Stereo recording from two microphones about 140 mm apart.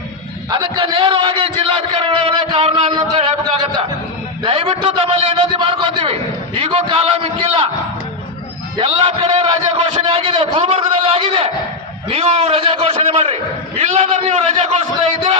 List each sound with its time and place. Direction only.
0.5 s a sound: 35° right (ahead or behind)
4.4 s a man's voice: 45° right (ahead or behind)
8.8 s a man's voice: 40° right (ahead or behind)